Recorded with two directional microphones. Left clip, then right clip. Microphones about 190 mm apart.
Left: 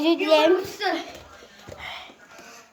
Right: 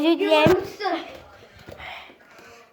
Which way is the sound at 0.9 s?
Centre (ahead or behind).